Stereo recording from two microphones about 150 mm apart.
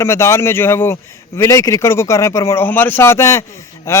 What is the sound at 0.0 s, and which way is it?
A man's voice, 15° left (ahead or behind).